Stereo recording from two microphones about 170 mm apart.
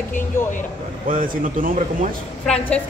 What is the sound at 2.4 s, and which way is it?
Speech, 5° left (ahead or behind).